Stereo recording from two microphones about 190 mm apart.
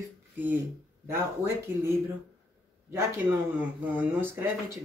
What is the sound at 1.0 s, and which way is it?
Speech, 15° right (ahead or behind).